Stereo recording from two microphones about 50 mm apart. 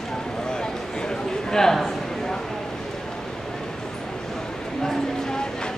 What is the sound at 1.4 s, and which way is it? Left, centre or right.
Speech, centre.